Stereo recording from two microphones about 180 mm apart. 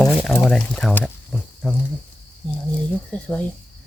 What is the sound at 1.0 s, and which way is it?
Cricket, centre (ahead or behind).